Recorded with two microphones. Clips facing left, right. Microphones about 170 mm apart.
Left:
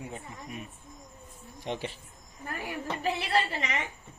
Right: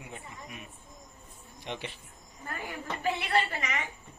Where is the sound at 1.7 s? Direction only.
40° left (ahead or behind).